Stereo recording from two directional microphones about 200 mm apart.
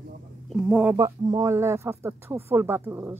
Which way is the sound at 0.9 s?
15° right (ahead or behind).